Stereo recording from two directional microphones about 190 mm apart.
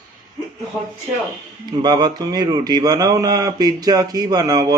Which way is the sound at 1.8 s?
20° right (ahead or behind).